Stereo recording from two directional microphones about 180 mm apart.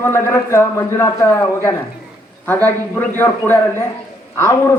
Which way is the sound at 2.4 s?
10° left (ahead or behind).